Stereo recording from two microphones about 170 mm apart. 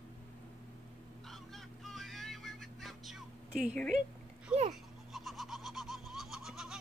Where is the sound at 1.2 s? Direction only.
Centre (ahead or behind).